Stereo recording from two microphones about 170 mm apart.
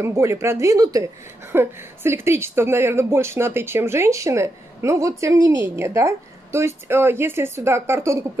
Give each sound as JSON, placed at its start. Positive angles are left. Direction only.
{"t": 0.0, "sound": "speech", "side_deg": -15}